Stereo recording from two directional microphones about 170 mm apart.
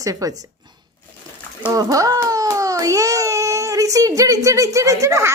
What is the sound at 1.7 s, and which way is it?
A child's voice, 20° right (ahead or behind).